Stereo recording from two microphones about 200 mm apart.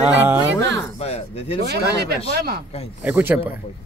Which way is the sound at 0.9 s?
30° left (ahead or behind).